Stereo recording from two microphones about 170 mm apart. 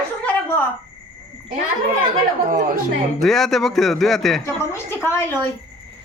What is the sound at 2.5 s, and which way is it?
Speech, 50° right (ahead or behind).